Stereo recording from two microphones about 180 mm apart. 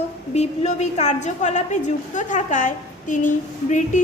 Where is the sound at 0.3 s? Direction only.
40° left (ahead or behind).